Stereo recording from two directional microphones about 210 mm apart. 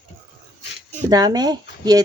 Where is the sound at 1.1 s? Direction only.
20° right (ahead or behind).